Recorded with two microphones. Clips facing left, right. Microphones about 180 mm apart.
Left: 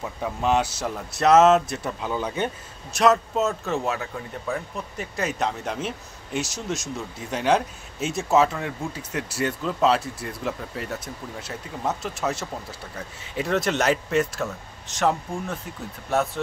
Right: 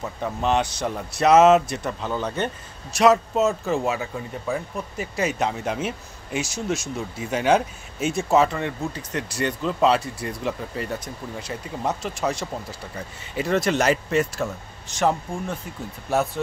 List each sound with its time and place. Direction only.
0.2 s speech: 5° left (ahead or behind)